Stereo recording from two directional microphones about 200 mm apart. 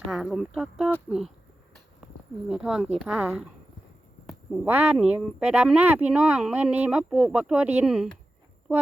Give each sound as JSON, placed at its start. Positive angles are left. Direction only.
{"t": 0.1, "sound": "speech", "side_deg": 0}
{"t": 2.5, "sound": "speech", "side_deg": 0}